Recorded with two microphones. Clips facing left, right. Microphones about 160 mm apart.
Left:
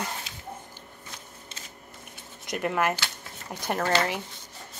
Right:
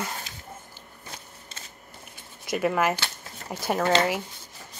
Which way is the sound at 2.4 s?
Centre (ahead or behind).